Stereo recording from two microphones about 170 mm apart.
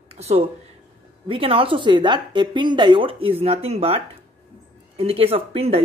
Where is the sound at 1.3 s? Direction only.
30° right (ahead or behind).